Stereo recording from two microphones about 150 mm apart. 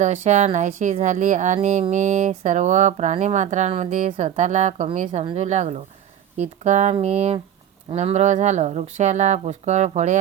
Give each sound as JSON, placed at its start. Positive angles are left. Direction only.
{"t": 0.0, "sound": "a woman's voice", "side_deg": -50}